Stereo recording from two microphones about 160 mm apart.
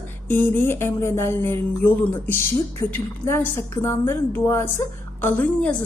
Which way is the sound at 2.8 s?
15° left (ahead or behind).